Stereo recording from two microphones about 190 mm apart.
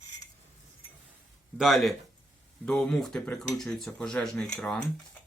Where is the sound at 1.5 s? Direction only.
Centre (ahead or behind).